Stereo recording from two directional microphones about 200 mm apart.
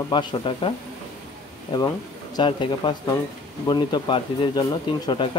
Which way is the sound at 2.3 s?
25° left (ahead or behind).